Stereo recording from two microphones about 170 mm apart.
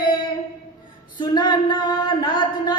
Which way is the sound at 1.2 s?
25° left (ahead or behind).